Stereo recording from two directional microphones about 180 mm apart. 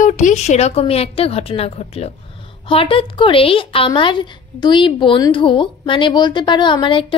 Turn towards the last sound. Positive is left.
turn(degrees=25)  # may be behind; listen again after turning